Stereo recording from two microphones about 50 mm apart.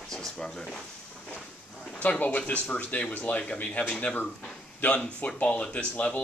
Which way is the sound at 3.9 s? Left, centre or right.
Centre.